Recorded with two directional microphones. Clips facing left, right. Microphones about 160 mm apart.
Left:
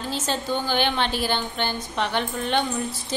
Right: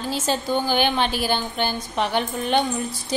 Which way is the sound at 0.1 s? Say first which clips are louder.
Right 3 dB; 10° right (ahead or behind).